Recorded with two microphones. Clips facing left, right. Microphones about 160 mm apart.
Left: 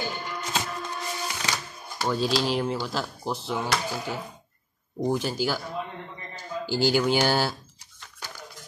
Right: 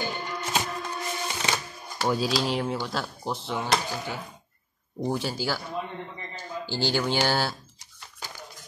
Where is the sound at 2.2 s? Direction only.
Centre (ahead or behind).